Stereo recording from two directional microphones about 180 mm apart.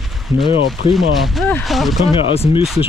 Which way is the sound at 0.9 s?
Centre (ahead or behind).